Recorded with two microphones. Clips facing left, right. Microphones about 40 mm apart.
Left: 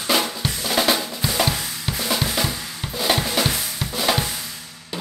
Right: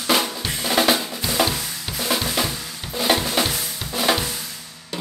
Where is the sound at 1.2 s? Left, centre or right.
Centre.